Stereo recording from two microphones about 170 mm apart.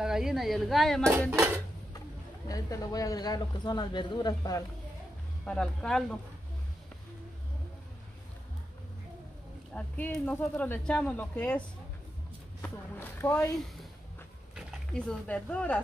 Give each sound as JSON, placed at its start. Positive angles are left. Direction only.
{"t": 0.0, "sound": "speech", "side_deg": -5}
{"t": 1.3, "sound": "dishes", "side_deg": -15}
{"t": 2.0, "sound": "speech", "side_deg": 20}
{"t": 5.4, "sound": "speech", "side_deg": 5}
{"t": 9.8, "sound": "speech", "side_deg": 10}
{"t": 12.6, "sound": "speech", "side_deg": 10}
{"t": 14.5, "sound": "speech", "side_deg": -5}